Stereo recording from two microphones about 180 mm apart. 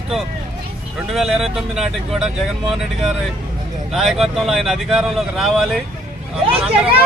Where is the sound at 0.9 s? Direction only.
Centre (ahead or behind).